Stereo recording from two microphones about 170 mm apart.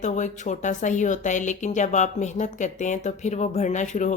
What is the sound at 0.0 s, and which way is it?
Speech, 45° left (ahead or behind).